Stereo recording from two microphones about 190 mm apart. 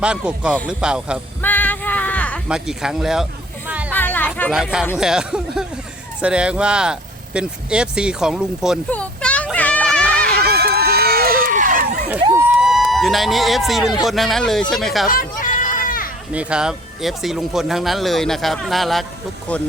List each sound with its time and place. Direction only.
0.0 s speech: 5° right (ahead or behind)
1.4 s a sound: 10° left (ahead or behind)
2.5 s speech: 5° right (ahead or behind)
3.7 s a sound: 5° right (ahead or behind)
3.9 s chatter: 10° left (ahead or behind)
4.9 s speech: 5° right (ahead or behind)
8.9 s a sound: 5° left (ahead or behind)
10.3 s run: 55° right (ahead or behind)
12.2 s a sound: 15° right (ahead or behind)
12.6 s speech: centre (ahead or behind)
15.0 s children playing: 45° left (ahead or behind)
16.3 s speech: 5° right (ahead or behind)